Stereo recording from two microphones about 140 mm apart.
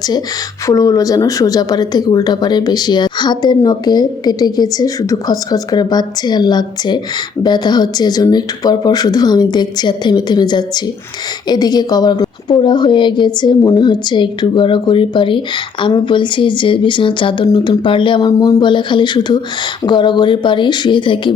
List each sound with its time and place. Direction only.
0.7 s a woman's voice: 25° left (ahead or behind)